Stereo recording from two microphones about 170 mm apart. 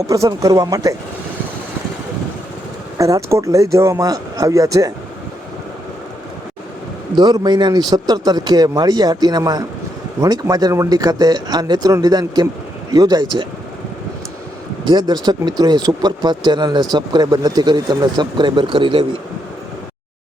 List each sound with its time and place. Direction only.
0.1 s a man's voice: 20° right (ahead or behind)
3.0 s a man's voice: 20° right (ahead or behind)
7.2 s a man's voice: 25° right (ahead or behind)
14.8 s a man's voice: 25° right (ahead or behind)